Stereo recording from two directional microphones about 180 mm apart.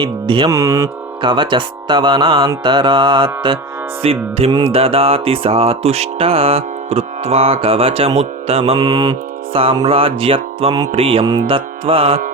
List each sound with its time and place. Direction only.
0.0 s speech: 25° right (ahead or behind)
4.0 s music: 30° right (ahead or behind)